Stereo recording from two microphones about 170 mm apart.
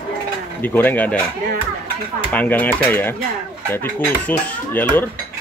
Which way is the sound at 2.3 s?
10° left (ahead or behind).